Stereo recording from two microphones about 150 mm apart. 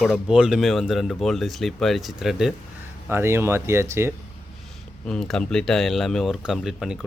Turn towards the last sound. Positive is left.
turn(degrees=-5)  # may be behind; listen again after turning